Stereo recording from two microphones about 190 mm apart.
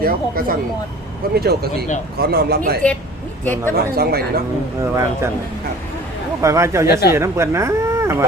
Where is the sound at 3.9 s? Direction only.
55° right (ahead or behind).